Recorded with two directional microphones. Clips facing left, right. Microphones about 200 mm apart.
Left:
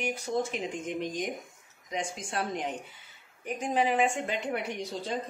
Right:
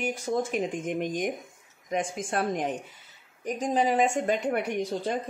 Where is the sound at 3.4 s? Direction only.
35° right (ahead or behind); by 5.2 s 55° right (ahead or behind).